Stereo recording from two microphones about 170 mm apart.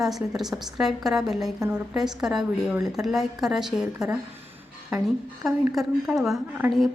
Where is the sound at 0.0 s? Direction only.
Centre (ahead or behind).